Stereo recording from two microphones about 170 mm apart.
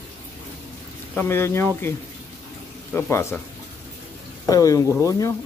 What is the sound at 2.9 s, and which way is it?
Speech, 15° left (ahead or behind).